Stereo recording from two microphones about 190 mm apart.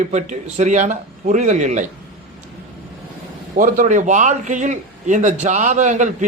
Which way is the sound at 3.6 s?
40° right (ahead or behind).